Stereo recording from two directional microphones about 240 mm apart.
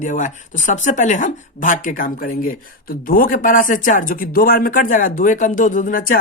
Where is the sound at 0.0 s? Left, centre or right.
Left.